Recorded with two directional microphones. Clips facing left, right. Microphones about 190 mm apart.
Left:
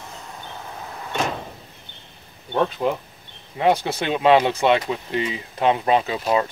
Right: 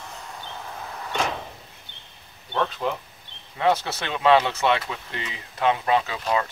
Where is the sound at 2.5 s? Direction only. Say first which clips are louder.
Left 5 dB; 15° left (ahead or behind).